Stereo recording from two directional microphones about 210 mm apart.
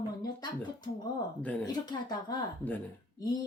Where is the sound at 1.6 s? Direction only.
20° left (ahead or behind).